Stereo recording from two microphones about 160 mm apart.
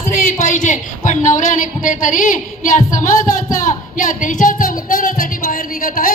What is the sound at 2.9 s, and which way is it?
Speech, 55° left (ahead or behind).